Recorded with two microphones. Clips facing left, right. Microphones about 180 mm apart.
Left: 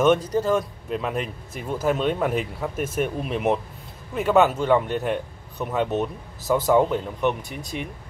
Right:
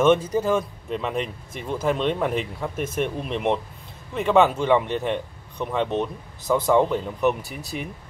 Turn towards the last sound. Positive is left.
turn(degrees=-5)  # may be behind; listen again after turning